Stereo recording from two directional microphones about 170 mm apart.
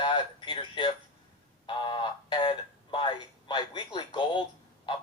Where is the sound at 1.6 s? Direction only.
30° left (ahead or behind).